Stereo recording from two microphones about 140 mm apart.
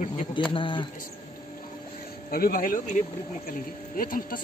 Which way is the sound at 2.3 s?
90° left.